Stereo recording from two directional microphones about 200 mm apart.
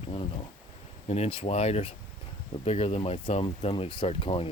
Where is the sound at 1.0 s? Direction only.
30° left (ahead or behind).